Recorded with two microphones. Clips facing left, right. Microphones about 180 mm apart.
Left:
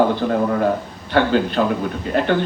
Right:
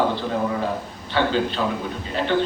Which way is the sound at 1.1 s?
55° left (ahead or behind).